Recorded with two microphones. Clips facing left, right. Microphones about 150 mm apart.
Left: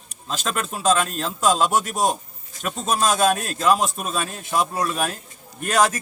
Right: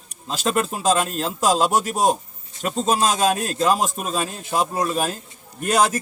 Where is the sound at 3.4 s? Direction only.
35° right (ahead or behind).